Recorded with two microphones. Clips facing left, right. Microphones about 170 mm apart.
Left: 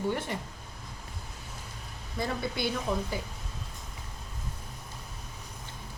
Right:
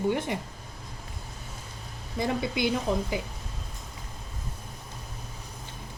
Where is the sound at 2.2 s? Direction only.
15° right (ahead or behind).